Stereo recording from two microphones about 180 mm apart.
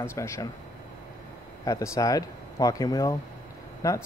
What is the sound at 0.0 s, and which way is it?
Speech, 15° left (ahead or behind).